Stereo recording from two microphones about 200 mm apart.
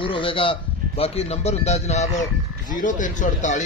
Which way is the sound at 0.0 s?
25° left (ahead or behind).